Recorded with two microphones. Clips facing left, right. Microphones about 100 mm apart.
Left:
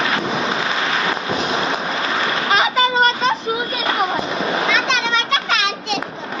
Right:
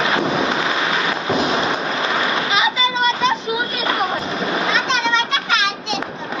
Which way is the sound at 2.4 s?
45° left (ahead or behind).